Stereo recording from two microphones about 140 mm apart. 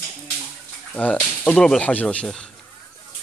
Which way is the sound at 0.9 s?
10° left (ahead or behind).